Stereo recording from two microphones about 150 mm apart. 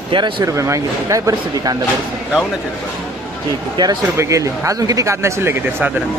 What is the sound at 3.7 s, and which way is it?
Speech, 25° right (ahead or behind).